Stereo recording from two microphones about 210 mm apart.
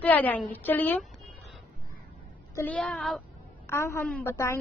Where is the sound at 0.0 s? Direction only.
5° left (ahead or behind).